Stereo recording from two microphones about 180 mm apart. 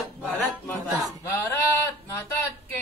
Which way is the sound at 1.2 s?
15° left (ahead or behind).